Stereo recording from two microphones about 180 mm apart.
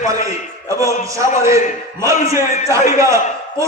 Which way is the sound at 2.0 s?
15° right (ahead or behind).